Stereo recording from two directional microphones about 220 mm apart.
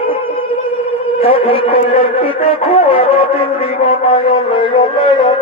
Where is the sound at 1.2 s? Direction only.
25° left (ahead or behind).